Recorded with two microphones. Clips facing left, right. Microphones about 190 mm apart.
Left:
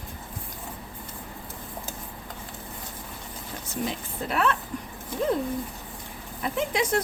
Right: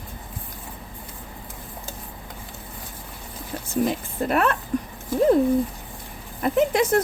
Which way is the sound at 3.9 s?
50° right (ahead or behind).